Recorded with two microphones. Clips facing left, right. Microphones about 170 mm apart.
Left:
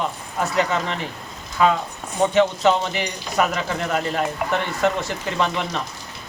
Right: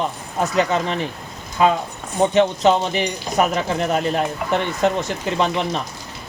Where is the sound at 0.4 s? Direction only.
20° right (ahead or behind).